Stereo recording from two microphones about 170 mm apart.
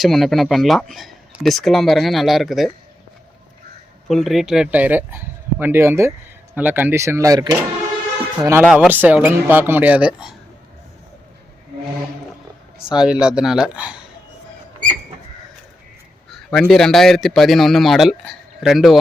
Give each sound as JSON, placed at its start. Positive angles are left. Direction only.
{"t": 0.0, "sound": "speech", "side_deg": 0}
{"t": 4.1, "sound": "speech", "side_deg": 0}
{"t": 8.6, "sound": "speech", "side_deg": -5}
{"t": 12.9, "sound": "speech", "side_deg": -5}
{"t": 16.3, "sound": "speech", "side_deg": 5}